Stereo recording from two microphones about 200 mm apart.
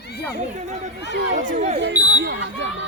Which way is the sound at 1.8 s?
60° right (ahead or behind).